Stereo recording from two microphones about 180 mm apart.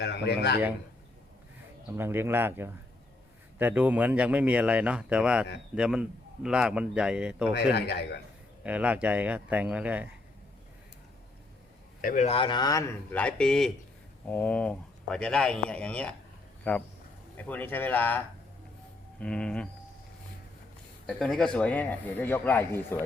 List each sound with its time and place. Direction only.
0.0 s a man's voice: 70° left (ahead or behind)
2.0 s a man's voice: 15° right (ahead or behind)
7.5 s speech: 70° left (ahead or behind)
8.6 s speech: 5° right (ahead or behind)
12.0 s speech: 40° left (ahead or behind); by 18.2 s 10° left (ahead or behind)
19.2 s a man's voice: 5° left (ahead or behind)
21.2 s speech: 5° left (ahead or behind)